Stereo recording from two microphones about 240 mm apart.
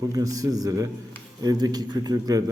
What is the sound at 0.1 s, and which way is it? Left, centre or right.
A man's voice, centre.